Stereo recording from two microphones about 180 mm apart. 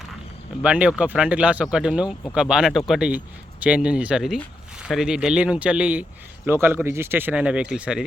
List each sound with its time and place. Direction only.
0.6 s speech: 5° right (ahead or behind)